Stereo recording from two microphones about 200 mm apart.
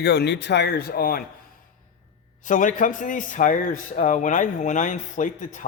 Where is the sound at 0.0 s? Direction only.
55° left (ahead or behind).